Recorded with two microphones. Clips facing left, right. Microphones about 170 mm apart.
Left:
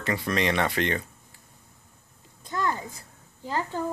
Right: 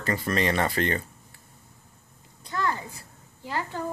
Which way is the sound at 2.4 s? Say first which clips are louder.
Even; 20° left (ahead or behind).